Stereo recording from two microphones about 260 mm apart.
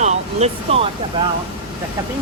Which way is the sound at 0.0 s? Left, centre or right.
Right.